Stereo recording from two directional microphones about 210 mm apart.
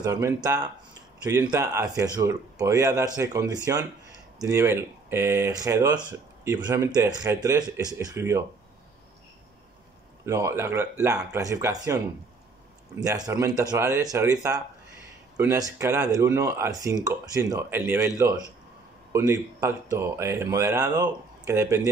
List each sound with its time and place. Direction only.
0.0 s speech: 15° right (ahead or behind)
10.2 s speech: 15° right (ahead or behind)